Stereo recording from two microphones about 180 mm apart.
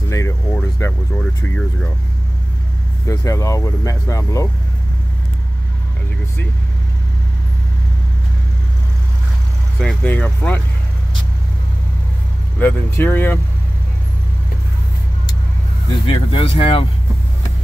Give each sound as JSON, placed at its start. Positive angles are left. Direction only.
{"t": 0.1, "sound": "a sound", "side_deg": 15}
{"t": 3.1, "sound": "speech", "side_deg": 15}
{"t": 9.8, "sound": "speech", "side_deg": 5}
{"t": 12.5, "sound": "speech", "side_deg": 10}
{"t": 15.9, "sound": "speech", "side_deg": 30}